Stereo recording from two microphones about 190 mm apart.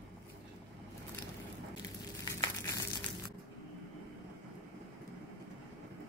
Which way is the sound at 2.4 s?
15° left (ahead or behind).